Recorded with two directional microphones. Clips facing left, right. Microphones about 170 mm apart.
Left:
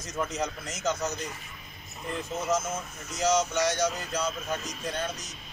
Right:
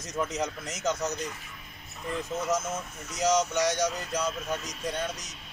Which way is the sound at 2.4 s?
15° right (ahead or behind).